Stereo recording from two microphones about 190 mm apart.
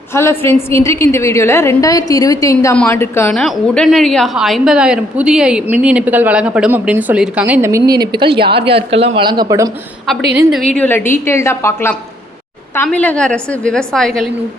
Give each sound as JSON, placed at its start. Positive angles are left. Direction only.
{"t": 0.1, "sound": "a woman's voice", "side_deg": 15}
{"t": 3.3, "sound": "a woman's voice", "side_deg": 0}
{"t": 8.4, "sound": "a woman's voice", "side_deg": -60}
{"t": 8.6, "sound": "speech", "side_deg": -30}
{"t": 10.3, "sound": "a woman's voice", "side_deg": 0}